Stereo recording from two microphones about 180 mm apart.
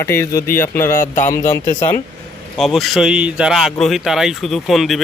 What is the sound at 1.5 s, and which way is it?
Speech, 15° left (ahead or behind).